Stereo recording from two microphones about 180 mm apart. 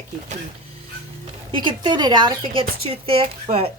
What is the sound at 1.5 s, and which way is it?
Speech, 25° right (ahead or behind).